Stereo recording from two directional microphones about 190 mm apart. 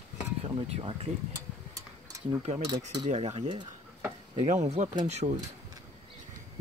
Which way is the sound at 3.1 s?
35° right (ahead or behind).